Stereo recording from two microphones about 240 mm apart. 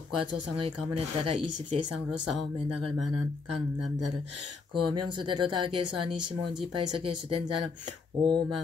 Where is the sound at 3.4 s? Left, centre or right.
Right.